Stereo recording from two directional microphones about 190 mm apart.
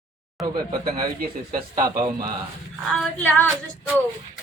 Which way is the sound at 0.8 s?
50° right (ahead or behind).